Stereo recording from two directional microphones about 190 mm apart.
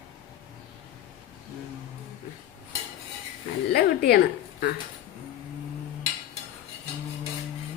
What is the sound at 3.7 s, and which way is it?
Speech, 60° left (ahead or behind).